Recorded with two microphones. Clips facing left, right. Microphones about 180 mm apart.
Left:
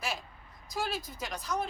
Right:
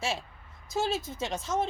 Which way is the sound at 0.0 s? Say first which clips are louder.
Right 4 dB; 25° right (ahead or behind).